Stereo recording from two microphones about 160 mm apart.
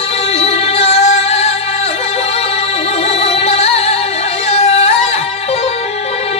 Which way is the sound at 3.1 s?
40° left (ahead or behind).